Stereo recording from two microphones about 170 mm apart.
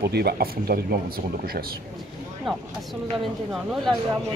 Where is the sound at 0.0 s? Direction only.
70° right (ahead or behind).